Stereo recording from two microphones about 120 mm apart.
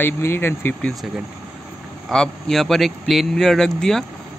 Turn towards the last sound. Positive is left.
turn(degrees=5)  # may be behind; listen again after turning